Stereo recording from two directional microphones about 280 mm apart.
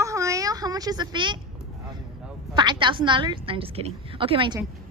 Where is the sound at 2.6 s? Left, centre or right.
Centre.